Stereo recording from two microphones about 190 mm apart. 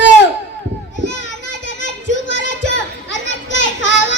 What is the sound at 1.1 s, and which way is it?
Children playing, 75° left (ahead or behind).